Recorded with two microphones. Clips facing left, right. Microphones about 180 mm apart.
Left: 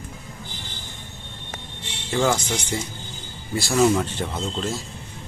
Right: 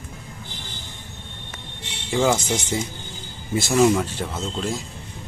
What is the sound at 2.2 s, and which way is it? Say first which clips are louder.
Speech: right 2 dB; 25° right (ahead or behind).